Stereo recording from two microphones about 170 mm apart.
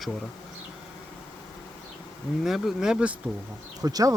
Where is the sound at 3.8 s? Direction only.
20° right (ahead or behind).